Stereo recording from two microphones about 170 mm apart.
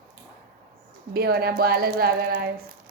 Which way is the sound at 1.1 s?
65° right (ahead or behind).